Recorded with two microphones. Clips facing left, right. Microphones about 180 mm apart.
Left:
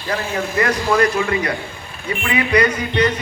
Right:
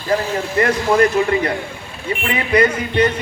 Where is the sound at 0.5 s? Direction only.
30° right (ahead or behind).